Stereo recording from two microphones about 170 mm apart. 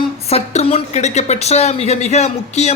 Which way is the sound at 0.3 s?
35° left (ahead or behind).